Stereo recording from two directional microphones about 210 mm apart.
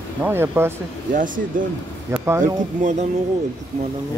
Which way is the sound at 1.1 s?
40° right (ahead or behind).